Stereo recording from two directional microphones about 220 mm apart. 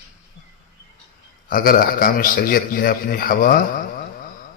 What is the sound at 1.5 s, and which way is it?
A man's voice, 40° left (ahead or behind).